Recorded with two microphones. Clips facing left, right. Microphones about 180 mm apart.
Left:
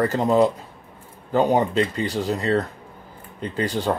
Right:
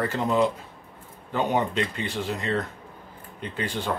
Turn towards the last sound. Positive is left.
turn(degrees=40)  # may be behind; listen again after turning